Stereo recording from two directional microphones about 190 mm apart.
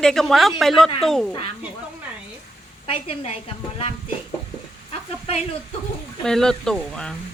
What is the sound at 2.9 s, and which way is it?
Speech, 30° left (ahead or behind).